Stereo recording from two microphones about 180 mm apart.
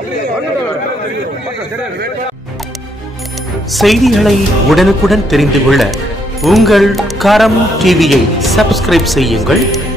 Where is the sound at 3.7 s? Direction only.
Centre (ahead or behind).